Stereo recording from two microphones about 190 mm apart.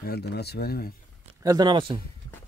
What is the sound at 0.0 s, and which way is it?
Speech, 55° left (ahead or behind).